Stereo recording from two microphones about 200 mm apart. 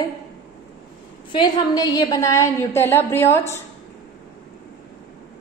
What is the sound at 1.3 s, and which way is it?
A woman's voice, 20° left (ahead or behind).